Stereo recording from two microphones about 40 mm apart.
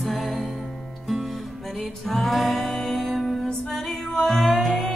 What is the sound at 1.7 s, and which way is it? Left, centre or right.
Music, centre.